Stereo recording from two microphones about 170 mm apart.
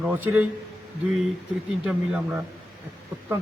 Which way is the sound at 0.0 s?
10° right (ahead or behind).